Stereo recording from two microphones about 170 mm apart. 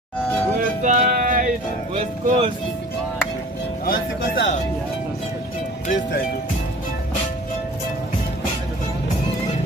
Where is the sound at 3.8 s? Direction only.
60° left (ahead or behind).